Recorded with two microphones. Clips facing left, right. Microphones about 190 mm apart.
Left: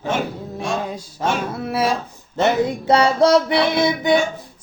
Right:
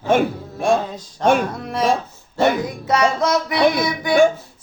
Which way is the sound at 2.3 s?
30° left (ahead or behind).